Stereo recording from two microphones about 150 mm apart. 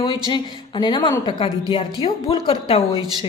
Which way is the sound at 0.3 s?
30° left (ahead or behind).